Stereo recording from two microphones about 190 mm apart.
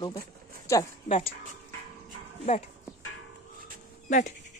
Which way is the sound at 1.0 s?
35° left (ahead or behind).